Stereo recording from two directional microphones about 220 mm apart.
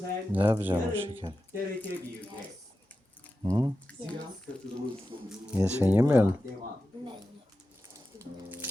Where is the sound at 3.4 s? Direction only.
20° right (ahead or behind).